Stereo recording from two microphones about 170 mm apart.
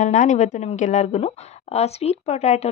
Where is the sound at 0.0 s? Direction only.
45° left (ahead or behind).